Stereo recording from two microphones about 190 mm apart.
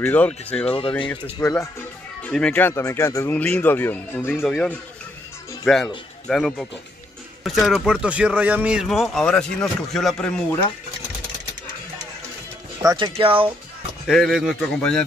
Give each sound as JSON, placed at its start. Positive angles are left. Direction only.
{"t": 0.0, "sound": "speech", "side_deg": 5}
{"t": 0.7, "sound": "speech", "side_deg": 30}
{"t": 1.4, "sound": "speech", "side_deg": 5}
{"t": 12.8, "sound": "speech", "side_deg": -25}
{"t": 14.0, "sound": "speech", "side_deg": 0}